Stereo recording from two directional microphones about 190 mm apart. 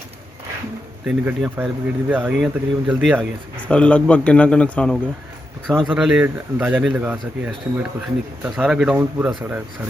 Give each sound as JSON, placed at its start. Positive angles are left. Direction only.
{"t": 1.0, "sound": "speech", "side_deg": -5}
{"t": 3.6, "sound": "a man's voice", "side_deg": 5}